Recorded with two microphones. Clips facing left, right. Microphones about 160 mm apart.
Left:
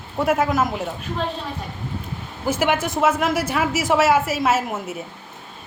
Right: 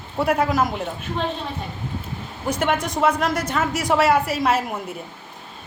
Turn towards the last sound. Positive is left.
turn(degrees=5)  # may be behind; listen again after turning